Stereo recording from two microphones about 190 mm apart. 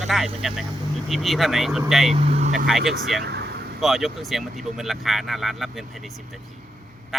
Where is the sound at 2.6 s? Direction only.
Centre (ahead or behind).